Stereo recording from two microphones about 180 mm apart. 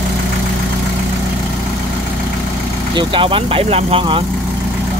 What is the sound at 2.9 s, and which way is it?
Speech, 25° right (ahead or behind).